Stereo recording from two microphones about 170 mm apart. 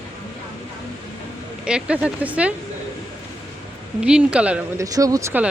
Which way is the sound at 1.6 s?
5° right (ahead or behind).